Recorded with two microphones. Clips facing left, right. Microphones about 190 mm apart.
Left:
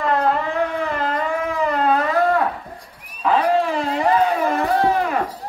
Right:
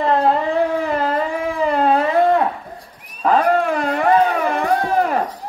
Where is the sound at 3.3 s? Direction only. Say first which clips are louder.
Right 2 dB; 50° right (ahead or behind).